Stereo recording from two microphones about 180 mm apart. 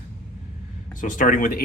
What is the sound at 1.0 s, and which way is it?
Speech, 45° left (ahead or behind).